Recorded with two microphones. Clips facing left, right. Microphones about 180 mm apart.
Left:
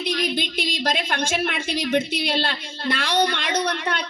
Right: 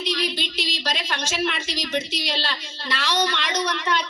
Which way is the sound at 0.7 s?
55° left (ahead or behind).